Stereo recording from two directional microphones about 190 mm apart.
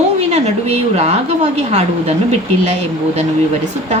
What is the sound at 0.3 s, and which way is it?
Speech, 35° right (ahead or behind).